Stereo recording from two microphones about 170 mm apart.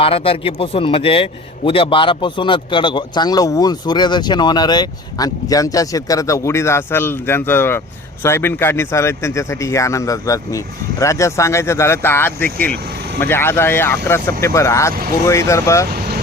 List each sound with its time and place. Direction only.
0.0 s a man's voice: 35° left (ahead or behind); by 15.9 s 15° left (ahead or behind)
15.9 s vehicle: 65° right (ahead or behind)